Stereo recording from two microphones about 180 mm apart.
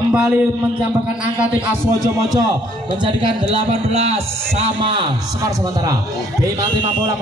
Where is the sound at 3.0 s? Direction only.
30° right (ahead or behind).